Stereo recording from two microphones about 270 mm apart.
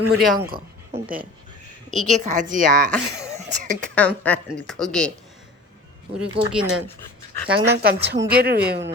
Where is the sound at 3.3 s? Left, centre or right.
Right.